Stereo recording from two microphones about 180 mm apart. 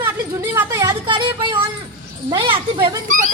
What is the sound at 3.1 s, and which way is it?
Speech, 45° right (ahead or behind).